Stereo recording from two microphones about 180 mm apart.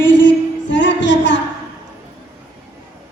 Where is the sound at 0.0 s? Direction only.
90° left.